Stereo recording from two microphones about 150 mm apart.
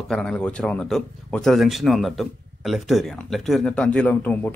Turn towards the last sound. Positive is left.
turn(degrees=10)  # may be behind; listen again after turning